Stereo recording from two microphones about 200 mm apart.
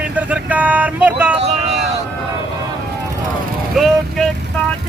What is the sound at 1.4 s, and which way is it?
Vehicle, 30° right (ahead or behind).